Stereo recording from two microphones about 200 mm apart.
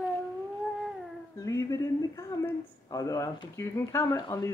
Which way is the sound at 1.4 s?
15° left (ahead or behind).